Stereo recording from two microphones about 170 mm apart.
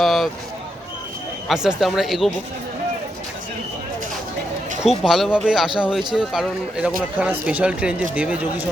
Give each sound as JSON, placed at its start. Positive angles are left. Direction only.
{"t": 0.0, "sound": "a sound", "side_deg": 0}
{"t": 1.5, "sound": "a man's voice", "side_deg": 0}
{"t": 4.8, "sound": "a man's voice", "side_deg": 0}